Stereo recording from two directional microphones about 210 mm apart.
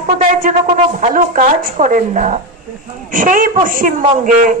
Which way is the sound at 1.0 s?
40° right (ahead or behind).